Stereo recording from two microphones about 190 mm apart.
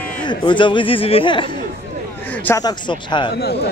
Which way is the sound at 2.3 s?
10° left (ahead or behind).